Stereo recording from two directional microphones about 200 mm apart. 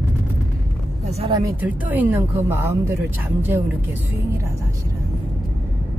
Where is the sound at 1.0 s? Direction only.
30° right (ahead or behind).